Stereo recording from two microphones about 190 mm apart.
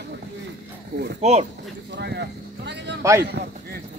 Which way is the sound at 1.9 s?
60° right (ahead or behind).